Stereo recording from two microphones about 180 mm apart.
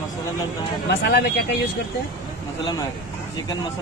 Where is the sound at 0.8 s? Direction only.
65° left (ahead or behind).